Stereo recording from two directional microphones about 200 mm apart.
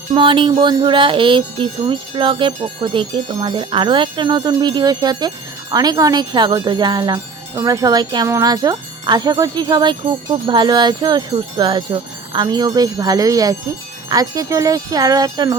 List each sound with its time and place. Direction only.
0.1 s speech: 25° right (ahead or behind)
14.1 s wind chime: 20° right (ahead or behind)